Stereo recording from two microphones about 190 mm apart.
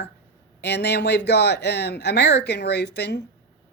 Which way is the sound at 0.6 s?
60° left (ahead or behind).